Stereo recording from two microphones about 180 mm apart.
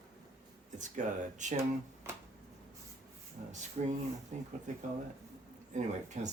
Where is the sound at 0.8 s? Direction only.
45° right (ahead or behind).